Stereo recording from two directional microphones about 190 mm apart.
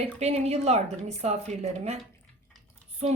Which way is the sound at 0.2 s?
35° right (ahead or behind).